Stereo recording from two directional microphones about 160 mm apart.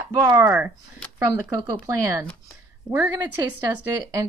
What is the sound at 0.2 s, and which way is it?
Speech, 20° right (ahead or behind).